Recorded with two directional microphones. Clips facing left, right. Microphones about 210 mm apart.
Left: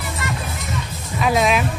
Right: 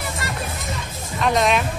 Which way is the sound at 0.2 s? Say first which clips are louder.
Left 6 dB; 40° right (ahead or behind).